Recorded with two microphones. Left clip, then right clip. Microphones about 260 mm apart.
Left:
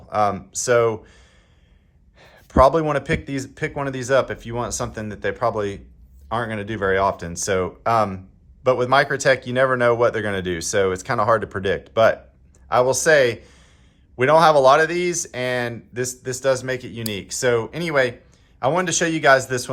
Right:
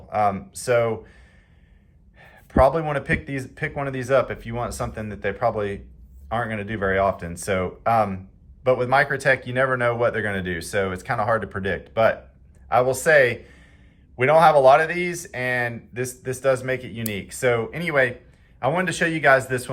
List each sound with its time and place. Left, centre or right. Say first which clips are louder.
0.1 s speech: left 1 dB; left